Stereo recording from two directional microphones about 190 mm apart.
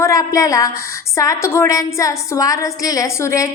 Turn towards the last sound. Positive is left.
turn(degrees=15)  # may be behind; listen again after turning